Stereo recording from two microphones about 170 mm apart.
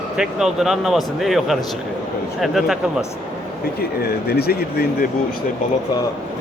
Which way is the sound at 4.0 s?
70° left (ahead or behind).